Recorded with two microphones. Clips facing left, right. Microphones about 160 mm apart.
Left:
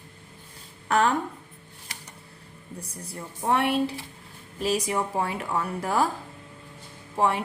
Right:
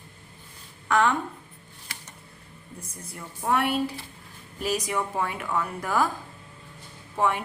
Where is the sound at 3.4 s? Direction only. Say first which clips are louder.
Left 1 dB; 25° left (ahead or behind).